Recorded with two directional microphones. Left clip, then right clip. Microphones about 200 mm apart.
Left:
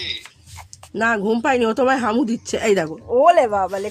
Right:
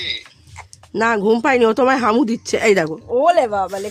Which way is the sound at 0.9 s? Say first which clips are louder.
Right 3 dB; 40° right (ahead or behind).